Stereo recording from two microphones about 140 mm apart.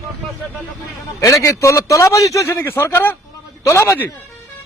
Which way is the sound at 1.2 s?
20° left (ahead or behind).